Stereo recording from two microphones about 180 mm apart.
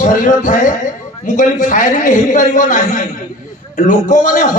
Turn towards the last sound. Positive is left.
turn(degrees=45)  # may be behind; listen again after turning